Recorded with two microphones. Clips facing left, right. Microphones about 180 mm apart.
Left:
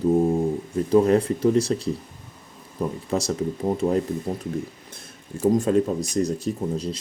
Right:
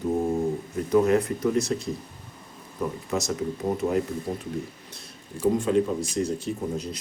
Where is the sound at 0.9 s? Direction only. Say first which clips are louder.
Left 3 dB; 30° left (ahead or behind).